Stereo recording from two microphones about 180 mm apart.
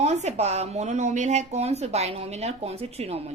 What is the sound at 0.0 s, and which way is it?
Speech, 40° right (ahead or behind).